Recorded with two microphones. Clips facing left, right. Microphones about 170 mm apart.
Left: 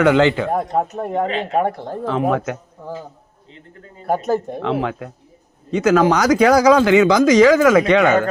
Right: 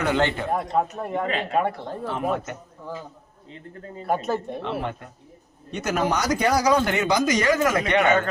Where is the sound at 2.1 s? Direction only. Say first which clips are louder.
Left 8 dB; 90° left.